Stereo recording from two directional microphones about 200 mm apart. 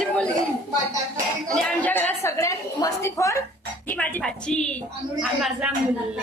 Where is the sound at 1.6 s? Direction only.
10° left (ahead or behind).